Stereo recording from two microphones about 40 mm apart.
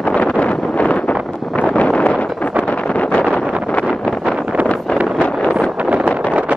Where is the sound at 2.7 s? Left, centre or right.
Left.